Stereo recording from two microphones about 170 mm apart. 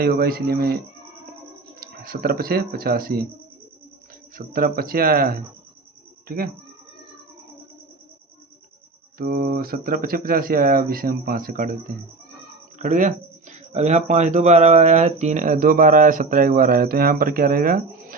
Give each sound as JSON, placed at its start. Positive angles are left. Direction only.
{"t": 0.0, "sound": "speech", "side_deg": -60}
{"t": 1.8, "sound": "speech", "side_deg": -60}
{"t": 4.4, "sound": "speech", "side_deg": -55}
{"t": 9.1, "sound": "speech", "side_deg": -60}
{"t": 12.8, "sound": "speech", "side_deg": -50}